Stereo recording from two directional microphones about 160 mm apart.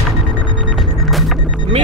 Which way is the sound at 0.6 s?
Centre (ahead or behind).